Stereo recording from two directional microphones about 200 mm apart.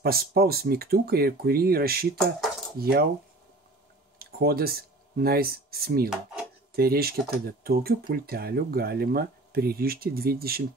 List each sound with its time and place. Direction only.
0.0 s speech: 50° right (ahead or behind)
4.2 s speech: 50° right (ahead or behind)